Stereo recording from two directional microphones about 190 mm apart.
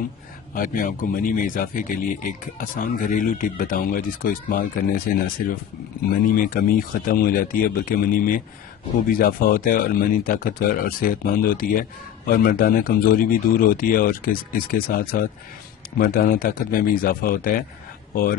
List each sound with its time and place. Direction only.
0.6 s speech: 45° left (ahead or behind)